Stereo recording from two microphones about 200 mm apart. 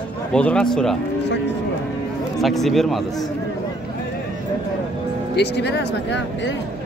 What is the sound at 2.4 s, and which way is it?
Speech, centre (ahead or behind).